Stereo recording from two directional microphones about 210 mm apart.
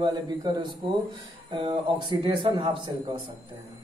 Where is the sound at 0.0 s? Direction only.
20° right (ahead or behind).